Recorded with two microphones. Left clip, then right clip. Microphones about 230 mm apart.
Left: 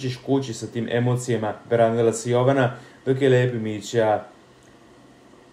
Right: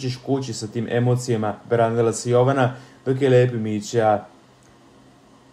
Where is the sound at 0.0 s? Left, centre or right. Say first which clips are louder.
Left 1 dB; centre.